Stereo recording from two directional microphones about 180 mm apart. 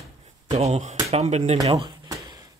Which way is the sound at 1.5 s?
25° right (ahead or behind).